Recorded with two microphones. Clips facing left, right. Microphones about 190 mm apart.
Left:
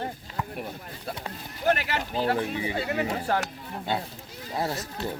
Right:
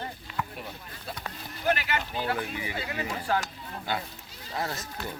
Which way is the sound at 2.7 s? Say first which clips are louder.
Left 6 dB; 50° left (ahead or behind).